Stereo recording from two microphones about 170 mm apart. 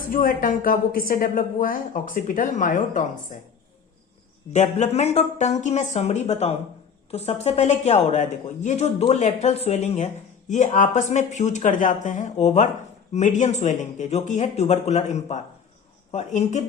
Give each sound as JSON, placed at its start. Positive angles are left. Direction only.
{"t": 0.1, "sound": "speech", "side_deg": 50}
{"t": 4.5, "sound": "speech", "side_deg": 40}